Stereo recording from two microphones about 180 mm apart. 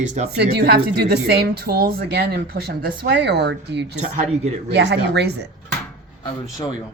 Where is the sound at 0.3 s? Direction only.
65° right (ahead or behind).